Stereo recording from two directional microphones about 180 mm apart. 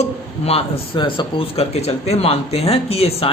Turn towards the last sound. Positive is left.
turn(degrees=35)  # may be behind; listen again after turning